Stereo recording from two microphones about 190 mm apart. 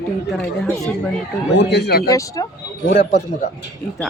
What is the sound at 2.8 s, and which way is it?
Speech, 40° left (ahead or behind).